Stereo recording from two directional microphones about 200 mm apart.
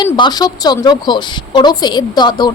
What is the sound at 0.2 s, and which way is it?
A woman's voice, 20° left (ahead or behind).